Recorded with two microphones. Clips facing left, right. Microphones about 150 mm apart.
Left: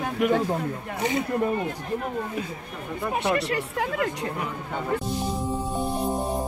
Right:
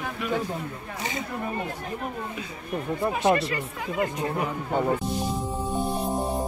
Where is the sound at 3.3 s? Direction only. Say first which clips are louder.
Left 3 dB; 70° left (ahead or behind).